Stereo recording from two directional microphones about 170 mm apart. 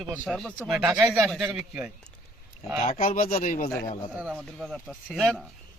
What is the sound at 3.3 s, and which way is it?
Speech, 50° left (ahead or behind).